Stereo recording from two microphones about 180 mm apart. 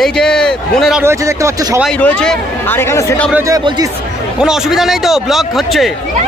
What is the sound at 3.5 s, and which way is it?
Speech, 20° right (ahead or behind).